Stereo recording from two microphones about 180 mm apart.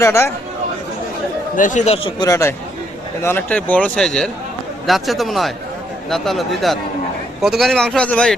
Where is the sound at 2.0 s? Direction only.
25° left (ahead or behind); by 8.4 s 5° left (ahead or behind).